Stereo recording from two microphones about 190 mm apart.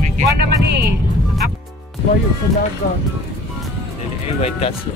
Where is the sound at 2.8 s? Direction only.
55° left (ahead or behind).